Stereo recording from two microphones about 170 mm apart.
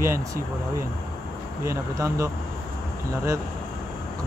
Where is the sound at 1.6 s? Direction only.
20° right (ahead or behind).